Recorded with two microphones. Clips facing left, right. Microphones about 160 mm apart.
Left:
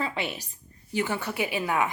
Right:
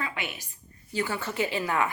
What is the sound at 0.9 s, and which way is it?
Speech, 15° left (ahead or behind).